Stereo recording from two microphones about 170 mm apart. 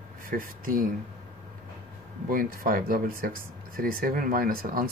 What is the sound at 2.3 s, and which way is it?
Speech, 55° right (ahead or behind).